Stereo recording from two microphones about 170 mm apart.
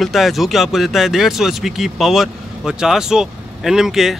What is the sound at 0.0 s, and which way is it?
Speech, centre (ahead or behind).